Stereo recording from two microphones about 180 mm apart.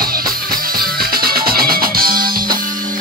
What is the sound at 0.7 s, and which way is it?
Music, 55° right (ahead or behind).